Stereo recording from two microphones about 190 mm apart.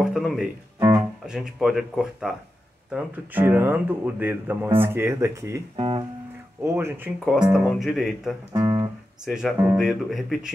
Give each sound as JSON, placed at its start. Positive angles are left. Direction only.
{"t": 0.0, "sound": "speech", "side_deg": 0}
{"t": 0.7, "sound": "music", "side_deg": -20}
{"t": 1.2, "sound": "speech", "side_deg": -5}
{"t": 5.8, "sound": "speech", "side_deg": -25}
{"t": 6.6, "sound": "speech", "side_deg": -15}
{"t": 8.5, "sound": "guitar", "side_deg": -20}
{"t": 9.2, "sound": "speech", "side_deg": 0}